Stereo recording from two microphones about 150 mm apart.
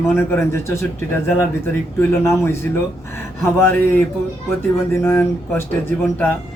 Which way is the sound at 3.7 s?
15° left (ahead or behind).